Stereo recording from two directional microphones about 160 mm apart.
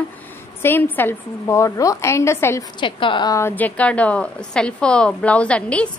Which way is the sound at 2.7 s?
30° left (ahead or behind).